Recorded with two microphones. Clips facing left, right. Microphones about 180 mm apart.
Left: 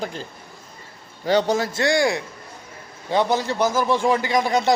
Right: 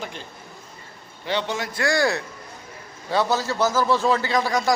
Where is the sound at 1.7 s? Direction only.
20° left (ahead or behind).